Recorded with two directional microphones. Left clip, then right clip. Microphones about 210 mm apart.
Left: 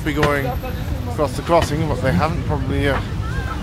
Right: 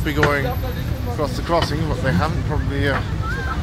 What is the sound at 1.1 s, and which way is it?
Speech, 20° left (ahead or behind).